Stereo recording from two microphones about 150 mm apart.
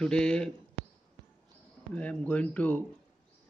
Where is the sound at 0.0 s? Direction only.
5° left (ahead or behind).